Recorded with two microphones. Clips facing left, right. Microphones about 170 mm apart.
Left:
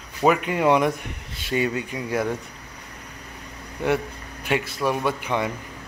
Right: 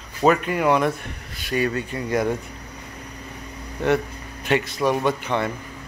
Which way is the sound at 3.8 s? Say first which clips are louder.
Right 2 dB; 10° left (ahead or behind).